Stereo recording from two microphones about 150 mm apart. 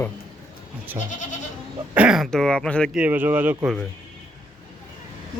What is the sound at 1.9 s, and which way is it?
Speech, 5° right (ahead or behind).